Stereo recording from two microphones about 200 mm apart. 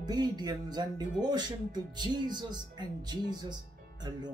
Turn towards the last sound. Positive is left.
turn(degrees=-20)  # may be behind; listen again after turning